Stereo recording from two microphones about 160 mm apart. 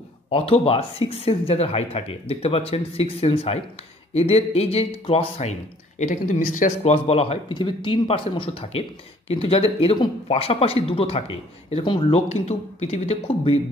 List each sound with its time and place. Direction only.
0.3 s speech: 35° left (ahead or behind)